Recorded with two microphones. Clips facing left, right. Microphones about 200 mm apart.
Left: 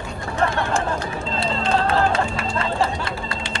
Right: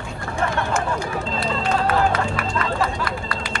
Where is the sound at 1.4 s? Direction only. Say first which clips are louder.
Left 2 dB; 25° left (ahead or behind).